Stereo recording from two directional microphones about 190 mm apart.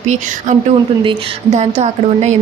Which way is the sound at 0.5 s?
40° right (ahead or behind).